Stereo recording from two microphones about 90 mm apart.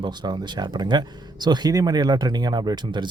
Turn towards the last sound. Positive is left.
turn(degrees=-55)  # may be behind; listen again after turning